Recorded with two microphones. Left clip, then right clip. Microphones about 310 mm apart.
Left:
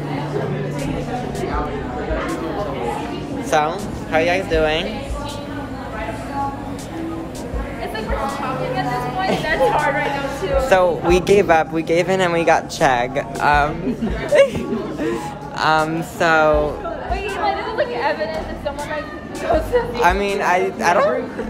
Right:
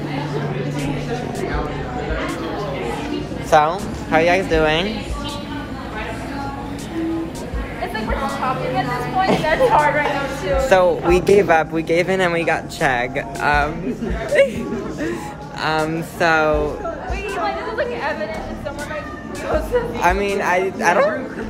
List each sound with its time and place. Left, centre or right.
3.4 s speech: centre
4.1 s speech: centre
8.7 s chatter: centre
10.4 s speech: centre
15.6 s speech: centre
17.5 s chatter: left
20.0 s speech: centre